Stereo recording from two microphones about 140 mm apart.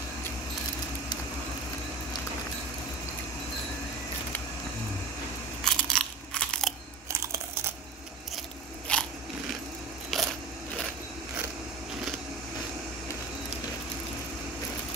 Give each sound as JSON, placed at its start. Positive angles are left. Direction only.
{"t": 5.6, "sound": "crunch", "side_deg": 5}
{"t": 7.1, "sound": "crumpling", "side_deg": -20}
{"t": 8.9, "sound": "biting", "side_deg": 5}
{"t": 10.1, "sound": "a sound", "side_deg": 0}